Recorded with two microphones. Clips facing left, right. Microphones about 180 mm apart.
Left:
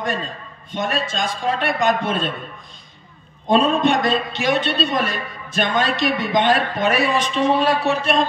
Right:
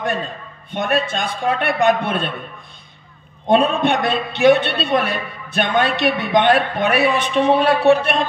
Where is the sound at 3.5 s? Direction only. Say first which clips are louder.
Right 1 dB; 60° right (ahead or behind).